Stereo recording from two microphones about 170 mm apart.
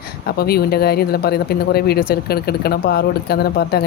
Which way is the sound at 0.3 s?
65° left (ahead or behind).